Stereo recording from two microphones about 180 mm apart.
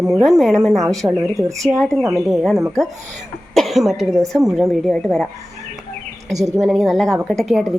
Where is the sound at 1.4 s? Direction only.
15° right (ahead or behind).